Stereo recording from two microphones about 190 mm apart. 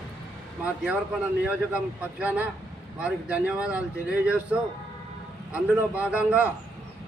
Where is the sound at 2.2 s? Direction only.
10° right (ahead or behind).